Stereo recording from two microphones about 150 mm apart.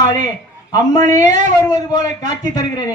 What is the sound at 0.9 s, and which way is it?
Speech, 55° right (ahead or behind).